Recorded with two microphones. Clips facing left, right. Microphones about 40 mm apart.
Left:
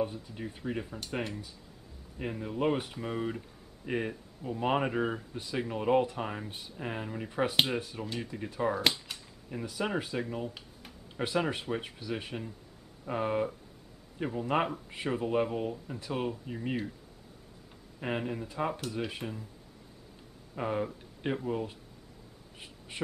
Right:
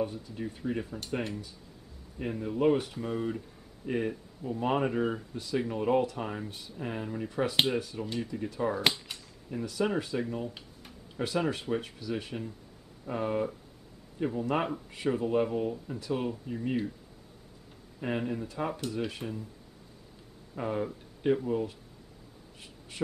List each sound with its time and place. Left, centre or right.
0.0 s speech: centre
18.0 s speech: centre
20.5 s speech: centre
22.6 s a sound: left